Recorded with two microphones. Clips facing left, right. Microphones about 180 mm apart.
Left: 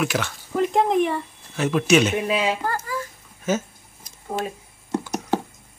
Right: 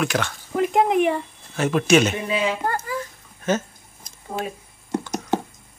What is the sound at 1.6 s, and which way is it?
Speech, 45° right (ahead or behind).